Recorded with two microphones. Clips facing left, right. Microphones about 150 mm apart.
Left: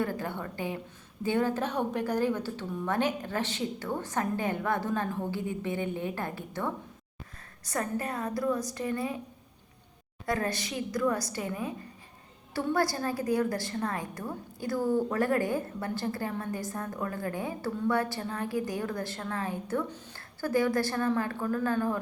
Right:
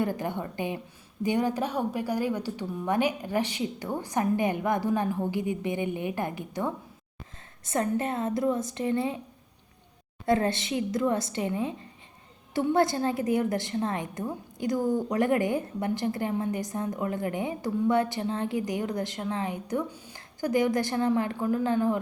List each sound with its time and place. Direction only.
0.0 s a woman's voice: 20° right (ahead or behind)
10.2 s a woman's voice: 25° right (ahead or behind)